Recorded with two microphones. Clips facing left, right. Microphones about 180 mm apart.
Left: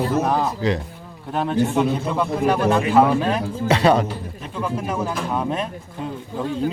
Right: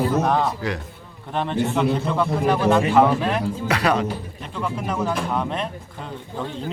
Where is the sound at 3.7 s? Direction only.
25° left (ahead or behind).